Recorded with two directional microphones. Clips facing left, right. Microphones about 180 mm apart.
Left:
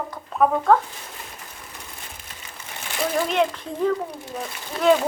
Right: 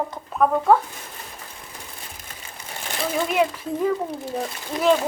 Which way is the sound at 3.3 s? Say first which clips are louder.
Right 1 dB; 5° right (ahead or behind).